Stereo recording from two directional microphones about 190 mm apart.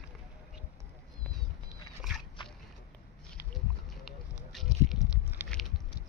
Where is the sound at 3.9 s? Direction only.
Centre (ahead or behind).